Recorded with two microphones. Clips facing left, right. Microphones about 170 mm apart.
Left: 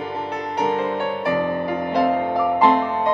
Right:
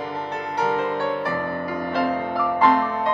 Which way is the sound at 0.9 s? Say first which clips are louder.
Left 2 dB; 20° left (ahead or behind).